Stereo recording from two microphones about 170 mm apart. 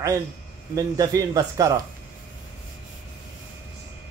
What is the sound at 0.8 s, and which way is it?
Speech, 20° right (ahead or behind).